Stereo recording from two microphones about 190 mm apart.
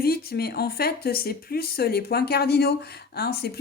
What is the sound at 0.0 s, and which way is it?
Speech, 55° left (ahead or behind).